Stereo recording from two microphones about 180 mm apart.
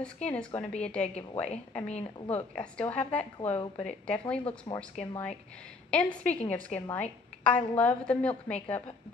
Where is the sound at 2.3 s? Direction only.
5° left (ahead or behind).